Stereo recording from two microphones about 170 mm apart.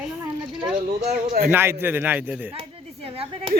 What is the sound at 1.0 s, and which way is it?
Speech, 65° right (ahead or behind).